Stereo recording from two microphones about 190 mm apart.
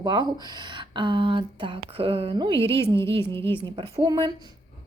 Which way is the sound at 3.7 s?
30° right (ahead or behind).